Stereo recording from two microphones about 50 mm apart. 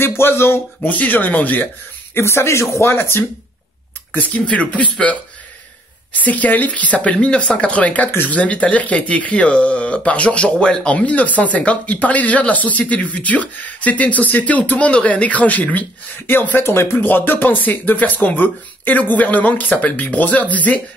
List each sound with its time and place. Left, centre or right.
0.0 s speech: left
0.8 s speech: left
2.1 s speech: left
4.1 s speech: left
6.1 s speech: left
16.6 s speech: left
17.0 s speech: left